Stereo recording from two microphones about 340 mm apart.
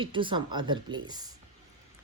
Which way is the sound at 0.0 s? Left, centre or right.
Centre.